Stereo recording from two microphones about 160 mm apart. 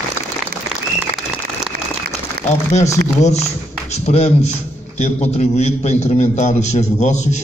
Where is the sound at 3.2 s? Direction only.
45° left (ahead or behind).